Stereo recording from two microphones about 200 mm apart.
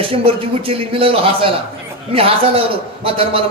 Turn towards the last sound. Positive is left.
turn(degrees=-30)  # may be behind; listen again after turning